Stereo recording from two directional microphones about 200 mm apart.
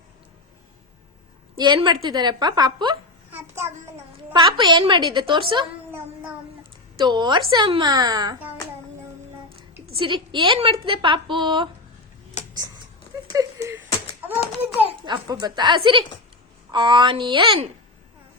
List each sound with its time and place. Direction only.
1.5 s a woman's voice: 20° right (ahead or behind)
3.3 s a child's voice: 10° right (ahead or behind)
4.3 s a woman's voice: 25° right (ahead or behind)
7.0 s a woman's voice: 20° right (ahead or behind)
10.0 s a woman's voice: 25° right (ahead or behind)
12.4 s a sound: 35° left (ahead or behind)
13.3 s a sound: 15° right (ahead or behind)
14.8 s a woman's voice: 25° right (ahead or behind)